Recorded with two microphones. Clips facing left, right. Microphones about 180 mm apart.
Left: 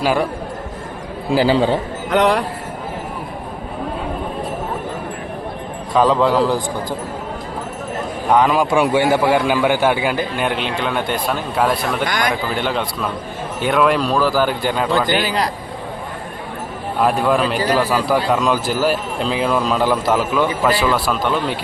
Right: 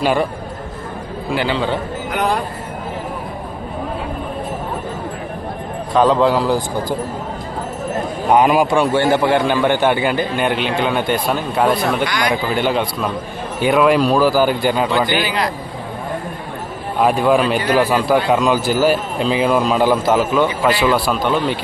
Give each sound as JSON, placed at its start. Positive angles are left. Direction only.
{"t": 0.0, "sound": "a man's voice", "side_deg": 0}
{"t": 1.3, "sound": "a man's voice", "side_deg": 35}
{"t": 2.0, "sound": "speech", "side_deg": 80}
{"t": 5.9, "sound": "a man's voice", "side_deg": 0}
{"t": 8.3, "sound": "a man's voice", "side_deg": -10}
{"t": 8.7, "sound": "a man's voice", "side_deg": 10}
{"t": 12.0, "sound": "speech", "side_deg": 45}
{"t": 12.5, "sound": "a man's voice", "side_deg": -5}
{"t": 15.0, "sound": "a man's voice", "side_deg": 40}
{"t": 17.0, "sound": "a man's voice", "side_deg": 0}